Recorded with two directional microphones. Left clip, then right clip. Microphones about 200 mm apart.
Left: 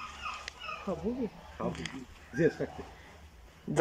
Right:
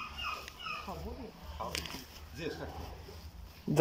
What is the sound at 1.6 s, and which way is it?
Speech, 50° left (ahead or behind).